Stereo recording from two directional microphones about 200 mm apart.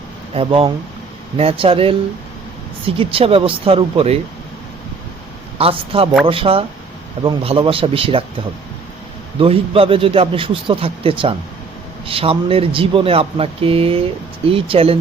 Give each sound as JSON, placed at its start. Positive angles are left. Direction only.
{"t": 0.3, "sound": "speech", "side_deg": -30}
{"t": 5.5, "sound": "speech", "side_deg": -30}
{"t": 9.4, "sound": "speech", "side_deg": -30}